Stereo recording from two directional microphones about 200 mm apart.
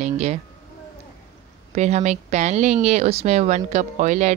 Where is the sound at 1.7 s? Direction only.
35° right (ahead or behind).